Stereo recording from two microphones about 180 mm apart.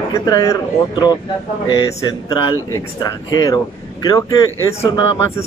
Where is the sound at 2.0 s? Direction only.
20° left (ahead or behind).